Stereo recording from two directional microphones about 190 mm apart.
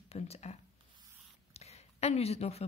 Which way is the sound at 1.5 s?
35° left (ahead or behind).